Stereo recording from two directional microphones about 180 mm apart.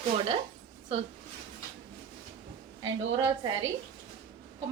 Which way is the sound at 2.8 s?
20° right (ahead or behind).